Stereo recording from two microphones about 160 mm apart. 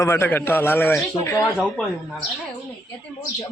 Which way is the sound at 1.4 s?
Centre (ahead or behind).